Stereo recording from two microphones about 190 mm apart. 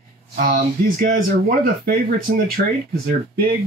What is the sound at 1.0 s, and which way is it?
Speech, 50° right (ahead or behind).